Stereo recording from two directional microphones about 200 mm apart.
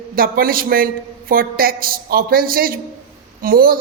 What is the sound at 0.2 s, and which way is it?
A man's voice, 45° right (ahead or behind).